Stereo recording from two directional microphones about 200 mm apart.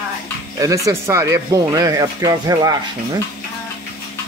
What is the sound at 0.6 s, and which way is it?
Speech, 15° right (ahead or behind).